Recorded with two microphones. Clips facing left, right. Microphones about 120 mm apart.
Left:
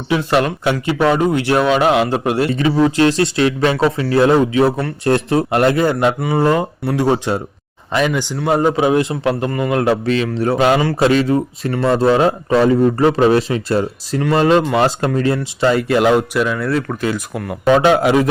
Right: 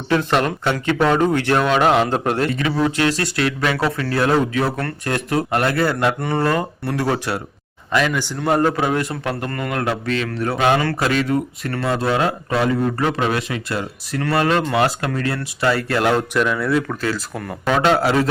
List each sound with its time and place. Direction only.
0.1 s speech: 5° left (ahead or behind)
2.6 s speech: 25° left (ahead or behind)
5.0 s a man's voice: 30° left (ahead or behind)
9.8 s a man's voice: 25° left (ahead or behind)
14.2 s speech: 20° left (ahead or behind)
16.4 s speech: centre (ahead or behind)
16.9 s a man's voice: 15° left (ahead or behind)
17.3 s speech: 5° left (ahead or behind)
17.7 s a man's voice: 20° left (ahead or behind)